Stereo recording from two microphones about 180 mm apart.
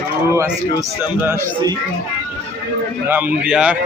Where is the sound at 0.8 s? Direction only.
15° right (ahead or behind).